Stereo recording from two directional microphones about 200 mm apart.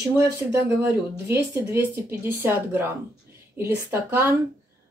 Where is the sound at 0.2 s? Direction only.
15° right (ahead or behind).